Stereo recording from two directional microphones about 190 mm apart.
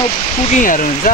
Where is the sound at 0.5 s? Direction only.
45° left (ahead or behind).